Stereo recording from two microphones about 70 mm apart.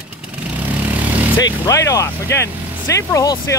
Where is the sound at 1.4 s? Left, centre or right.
Left.